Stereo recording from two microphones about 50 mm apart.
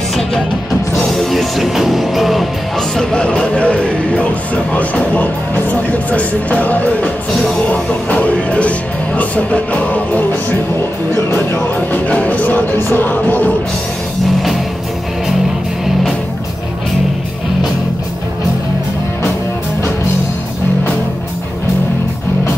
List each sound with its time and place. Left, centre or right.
0.9 s music: centre
3.0 s speech: centre
7.6 s music: left
11.9 s music: left